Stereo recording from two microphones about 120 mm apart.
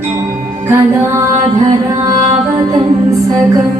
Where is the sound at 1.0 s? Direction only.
25° right (ahead or behind).